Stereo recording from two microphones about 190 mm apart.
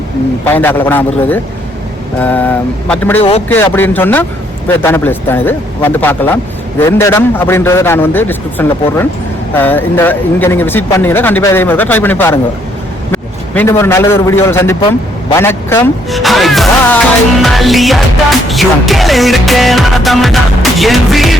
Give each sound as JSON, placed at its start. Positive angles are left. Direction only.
{"t": 0.4, "sound": "a man's voice", "side_deg": 10}
{"t": 14.8, "sound": "a man's voice", "side_deg": 25}
{"t": 15.4, "sound": "a man's voice", "side_deg": 15}
{"t": 16.0, "sound": "music", "side_deg": 0}